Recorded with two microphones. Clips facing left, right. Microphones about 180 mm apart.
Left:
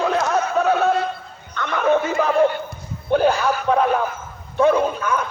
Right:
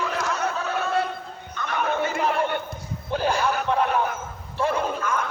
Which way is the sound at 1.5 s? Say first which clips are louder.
Left 7 dB; 75° left (ahead or behind).